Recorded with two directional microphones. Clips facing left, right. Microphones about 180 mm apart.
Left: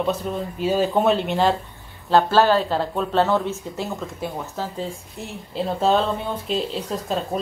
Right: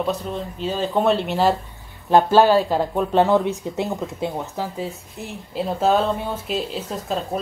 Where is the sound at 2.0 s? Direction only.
15° right (ahead or behind).